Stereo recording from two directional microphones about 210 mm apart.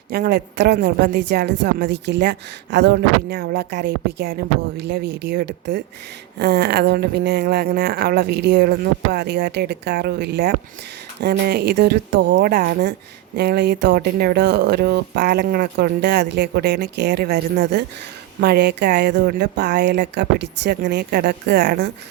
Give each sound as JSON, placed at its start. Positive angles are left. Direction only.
{"t": 0.1, "sound": "speech", "side_deg": -45}